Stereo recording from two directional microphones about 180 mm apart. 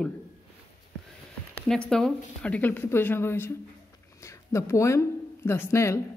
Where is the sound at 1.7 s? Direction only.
5° left (ahead or behind).